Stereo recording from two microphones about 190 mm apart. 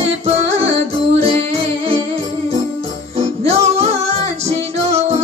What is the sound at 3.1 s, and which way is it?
Music, 35° right (ahead or behind).